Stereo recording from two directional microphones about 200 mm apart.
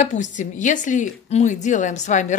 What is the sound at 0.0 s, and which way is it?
A woman's voice, 35° left (ahead or behind).